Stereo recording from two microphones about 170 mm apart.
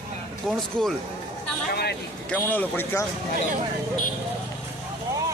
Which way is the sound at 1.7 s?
70° left (ahead or behind).